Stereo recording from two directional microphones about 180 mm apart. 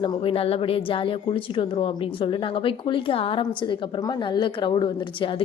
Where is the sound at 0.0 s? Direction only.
25° left (ahead or behind).